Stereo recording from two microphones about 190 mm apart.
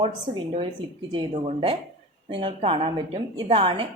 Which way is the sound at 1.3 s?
30° right (ahead or behind).